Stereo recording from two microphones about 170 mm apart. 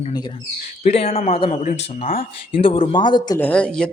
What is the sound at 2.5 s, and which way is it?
Speech, 30° left (ahead or behind).